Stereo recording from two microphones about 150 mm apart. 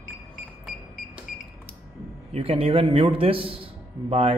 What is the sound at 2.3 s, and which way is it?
A man's voice, 40° right (ahead or behind).